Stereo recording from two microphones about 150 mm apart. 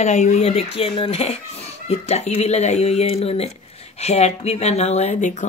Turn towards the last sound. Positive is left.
turn(degrees=55)  # may be behind; listen again after turning